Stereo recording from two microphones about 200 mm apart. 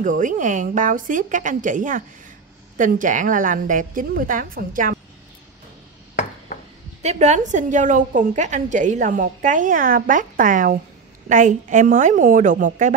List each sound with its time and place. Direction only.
0.0 s a woman's voice: 40° right (ahead or behind)
7.0 s a woman's voice: 35° right (ahead or behind)